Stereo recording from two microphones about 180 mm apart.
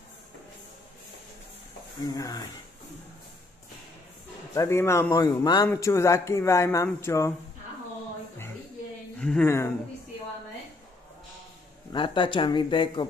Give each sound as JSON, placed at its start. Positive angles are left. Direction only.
{"t": 2.1, "sound": "speech", "side_deg": 20}
{"t": 4.6, "sound": "a man's voice", "side_deg": 15}
{"t": 9.2, "sound": "a man's voice", "side_deg": 5}
{"t": 11.9, "sound": "speech", "side_deg": 25}